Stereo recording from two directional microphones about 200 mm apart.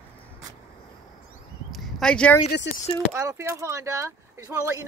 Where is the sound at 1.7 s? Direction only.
Centre (ahead or behind).